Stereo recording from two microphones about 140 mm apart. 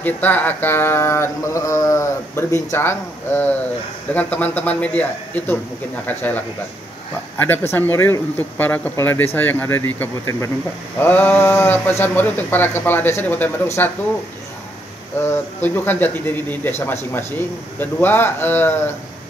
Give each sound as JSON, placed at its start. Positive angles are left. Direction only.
{"t": 0.0, "sound": "mantra", "side_deg": 10}
{"t": 15.1, "sound": "mantra", "side_deg": 15}